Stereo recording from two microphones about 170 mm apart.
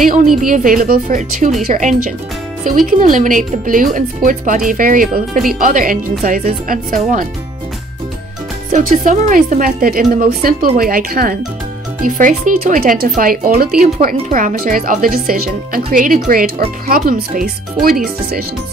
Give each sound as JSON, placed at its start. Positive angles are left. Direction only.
{"t": 0.4, "sound": "speech", "side_deg": -50}
{"t": 8.7, "sound": "speech", "side_deg": -50}